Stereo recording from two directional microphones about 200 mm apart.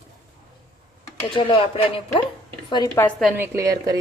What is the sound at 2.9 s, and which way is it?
Speech, 10° left (ahead or behind).